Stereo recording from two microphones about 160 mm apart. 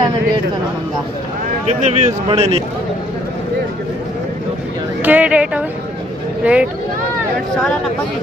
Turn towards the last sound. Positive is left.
turn(degrees=-10)  # may be behind; listen again after turning